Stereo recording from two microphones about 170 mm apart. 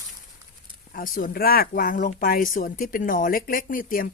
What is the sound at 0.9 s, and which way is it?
Speech, 55° left (ahead or behind).